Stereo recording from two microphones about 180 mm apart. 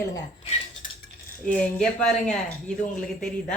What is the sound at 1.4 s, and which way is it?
A woman's voice, 5° left (ahead or behind).